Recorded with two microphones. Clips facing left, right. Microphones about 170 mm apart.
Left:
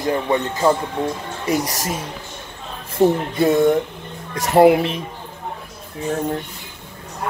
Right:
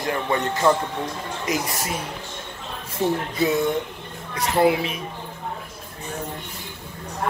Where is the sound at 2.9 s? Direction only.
50° left (ahead or behind).